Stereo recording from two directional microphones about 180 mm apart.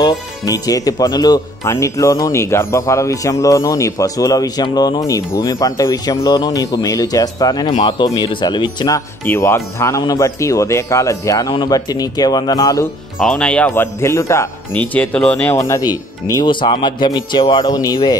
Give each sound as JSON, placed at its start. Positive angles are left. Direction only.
{"t": 0.0, "sound": "speech", "side_deg": 20}
{"t": 13.2, "sound": "speech", "side_deg": 5}